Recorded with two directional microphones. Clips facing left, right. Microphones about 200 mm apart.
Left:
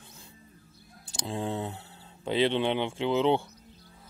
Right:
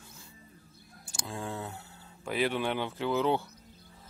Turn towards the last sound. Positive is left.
turn(degrees=20)  # may be behind; listen again after turning